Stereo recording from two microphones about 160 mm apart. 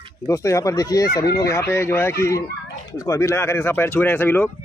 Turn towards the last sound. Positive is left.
turn(degrees=15)  # may be behind; listen again after turning